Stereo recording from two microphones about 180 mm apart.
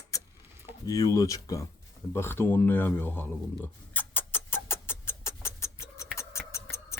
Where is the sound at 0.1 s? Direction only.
20° left (ahead or behind).